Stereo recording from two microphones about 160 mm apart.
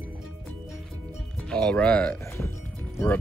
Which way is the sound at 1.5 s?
5° left (ahead or behind).